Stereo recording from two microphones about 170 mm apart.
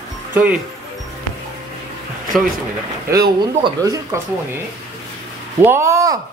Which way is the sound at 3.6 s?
20° right (ahead or behind).